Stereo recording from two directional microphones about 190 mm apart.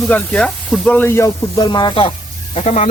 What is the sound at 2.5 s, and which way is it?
Speech, 35° left (ahead or behind).